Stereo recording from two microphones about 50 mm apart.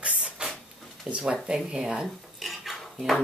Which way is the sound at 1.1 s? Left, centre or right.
Centre.